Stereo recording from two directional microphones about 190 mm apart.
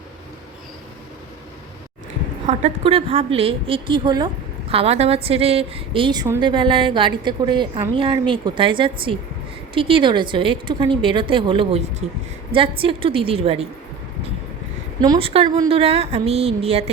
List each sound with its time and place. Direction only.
2.5 s a woman's voice: 35° right (ahead or behind)
15.0 s a woman's voice: 25° right (ahead or behind)
15.8 s a woman's voice: 30° right (ahead or behind)